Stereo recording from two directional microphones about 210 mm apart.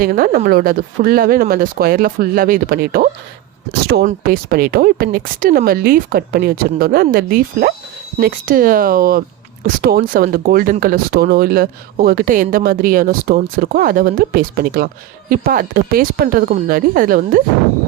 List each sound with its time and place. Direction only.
0.0 s speech: 45° right (ahead or behind)